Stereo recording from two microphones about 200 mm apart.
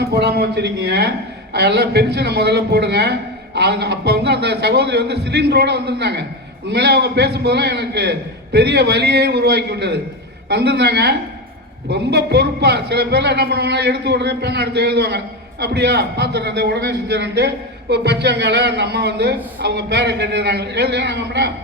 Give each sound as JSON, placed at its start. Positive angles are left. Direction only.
{"t": 0.0, "sound": "a man's voice", "side_deg": -55}